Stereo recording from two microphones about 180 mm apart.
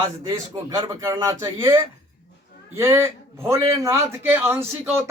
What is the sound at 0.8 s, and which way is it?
Speech, 15° right (ahead or behind).